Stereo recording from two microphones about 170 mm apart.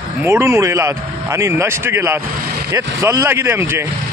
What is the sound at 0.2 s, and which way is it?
A man's voice, 15° right (ahead or behind).